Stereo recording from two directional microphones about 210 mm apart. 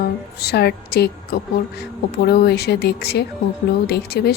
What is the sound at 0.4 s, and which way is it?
A woman's voice, 50° left (ahead or behind).